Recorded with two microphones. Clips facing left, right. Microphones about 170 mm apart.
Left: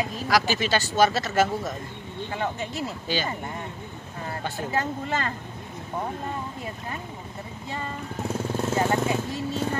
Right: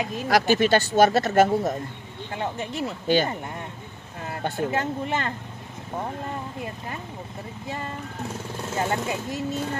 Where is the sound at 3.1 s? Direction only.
55° right (ahead or behind).